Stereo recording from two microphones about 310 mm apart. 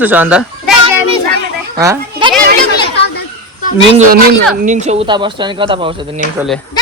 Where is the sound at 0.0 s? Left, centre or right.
Centre.